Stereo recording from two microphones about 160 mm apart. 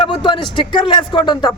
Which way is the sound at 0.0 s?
30° left (ahead or behind).